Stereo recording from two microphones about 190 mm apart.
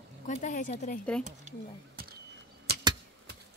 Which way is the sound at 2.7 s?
55° right (ahead or behind).